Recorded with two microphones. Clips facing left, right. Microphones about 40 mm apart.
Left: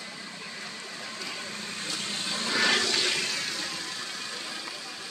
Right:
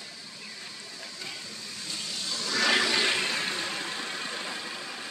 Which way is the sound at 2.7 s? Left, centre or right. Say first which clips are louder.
Right 2 dB; centre.